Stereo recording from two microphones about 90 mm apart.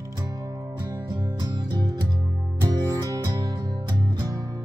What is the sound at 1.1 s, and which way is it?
Music, 50° right (ahead or behind).